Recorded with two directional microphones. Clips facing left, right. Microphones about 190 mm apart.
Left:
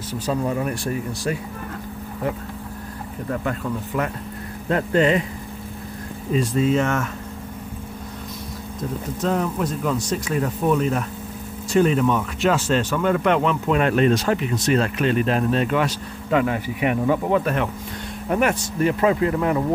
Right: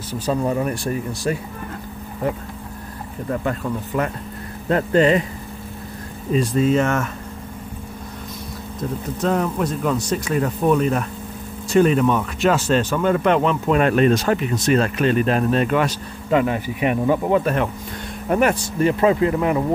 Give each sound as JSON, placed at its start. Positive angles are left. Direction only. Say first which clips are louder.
{"t": 0.3, "sound": "speech", "louder": "right 2 dB", "side_deg": -35}
{"t": 3.3, "sound": "speech", "louder": "right 2 dB", "side_deg": -35}
{"t": 6.7, "sound": "speech", "louder": "right 2 dB", "side_deg": -50}
{"t": 9.2, "sound": "speech", "louder": "right 2 dB", "side_deg": -60}
{"t": 16.3, "sound": "speech", "louder": "right 2 dB", "side_deg": -25}